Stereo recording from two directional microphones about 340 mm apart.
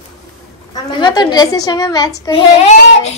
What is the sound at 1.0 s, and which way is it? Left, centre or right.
A child's voice, centre.